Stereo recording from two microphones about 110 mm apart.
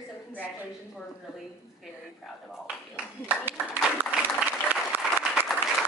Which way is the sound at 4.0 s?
20° right (ahead or behind).